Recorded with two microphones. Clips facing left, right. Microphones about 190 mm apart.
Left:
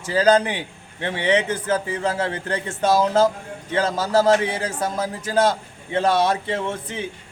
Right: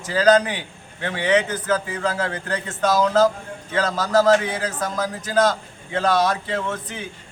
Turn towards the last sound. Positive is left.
turn(degrees=25)  # may be behind; listen again after turning